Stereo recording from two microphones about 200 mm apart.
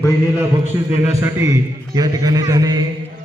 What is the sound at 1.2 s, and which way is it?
A man's voice, 15° right (ahead or behind).